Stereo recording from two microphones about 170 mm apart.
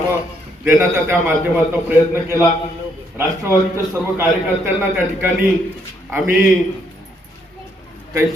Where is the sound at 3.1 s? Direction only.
15° right (ahead or behind).